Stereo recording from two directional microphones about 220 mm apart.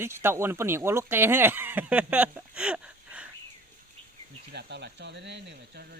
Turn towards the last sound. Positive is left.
turn(degrees=-55)  # may be behind; listen again after turning